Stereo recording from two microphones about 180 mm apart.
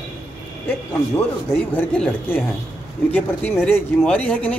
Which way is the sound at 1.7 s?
10° left (ahead or behind).